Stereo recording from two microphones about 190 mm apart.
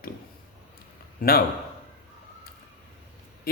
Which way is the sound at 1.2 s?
50° left (ahead or behind).